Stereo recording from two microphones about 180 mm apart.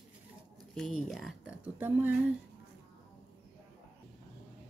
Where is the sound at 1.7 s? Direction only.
10° right (ahead or behind).